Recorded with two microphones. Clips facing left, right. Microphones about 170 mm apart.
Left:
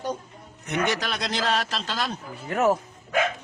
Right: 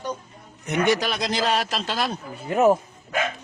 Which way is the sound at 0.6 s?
15° right (ahead or behind).